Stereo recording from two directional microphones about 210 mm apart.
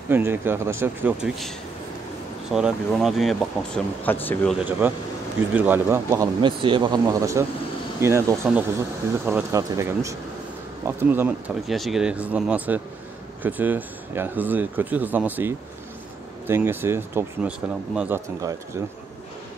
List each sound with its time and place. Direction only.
0.1 s speech: 10° right (ahead or behind)
2.5 s speech: centre (ahead or behind)
4.6 s speech: 10° right (ahead or behind)
6.4 s speech: 20° right (ahead or behind)